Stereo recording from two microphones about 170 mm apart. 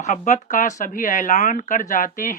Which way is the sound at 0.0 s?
45° left (ahead or behind).